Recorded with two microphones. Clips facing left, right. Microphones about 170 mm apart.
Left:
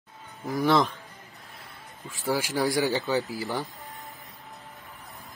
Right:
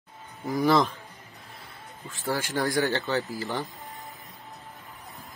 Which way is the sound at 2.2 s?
Centre (ahead or behind).